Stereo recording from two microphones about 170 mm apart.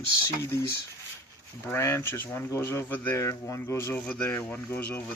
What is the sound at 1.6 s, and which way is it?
Speech, 15° left (ahead or behind).